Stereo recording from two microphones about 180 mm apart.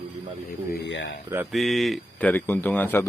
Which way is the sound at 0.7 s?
75° left (ahead or behind).